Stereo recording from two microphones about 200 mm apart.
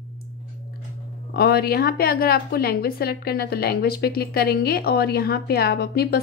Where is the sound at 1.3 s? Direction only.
50° left (ahead or behind).